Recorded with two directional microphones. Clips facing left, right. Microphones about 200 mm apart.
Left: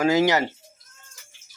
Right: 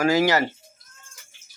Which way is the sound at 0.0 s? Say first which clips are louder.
Even; 20° left (ahead or behind).